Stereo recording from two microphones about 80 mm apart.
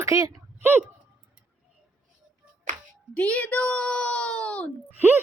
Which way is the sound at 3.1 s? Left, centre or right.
Centre.